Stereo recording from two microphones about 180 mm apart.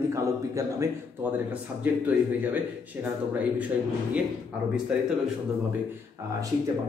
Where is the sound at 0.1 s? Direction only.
15° right (ahead or behind).